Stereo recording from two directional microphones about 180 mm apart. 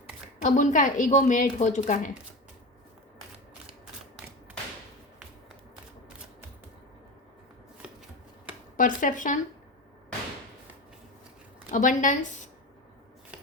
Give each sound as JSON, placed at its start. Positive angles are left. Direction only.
{"t": 0.4, "sound": "a woman's voice", "side_deg": 45}
{"t": 8.7, "sound": "speech", "side_deg": 45}
{"t": 11.7, "sound": "a woman's voice", "side_deg": 45}